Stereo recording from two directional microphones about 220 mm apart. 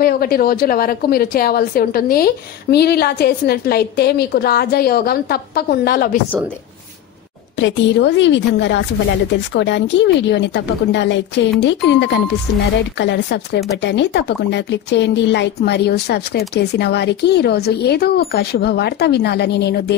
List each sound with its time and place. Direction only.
0.0 s speech: 45° left (ahead or behind)
7.6 s speech: 55° left (ahead or behind)